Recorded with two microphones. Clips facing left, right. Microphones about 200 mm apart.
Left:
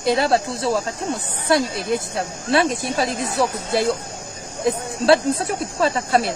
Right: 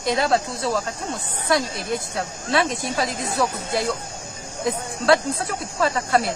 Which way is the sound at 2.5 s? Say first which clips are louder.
Left 3 dB; 30° left (ahead or behind).